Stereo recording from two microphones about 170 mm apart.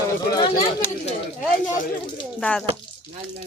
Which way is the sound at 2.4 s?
5° left (ahead or behind).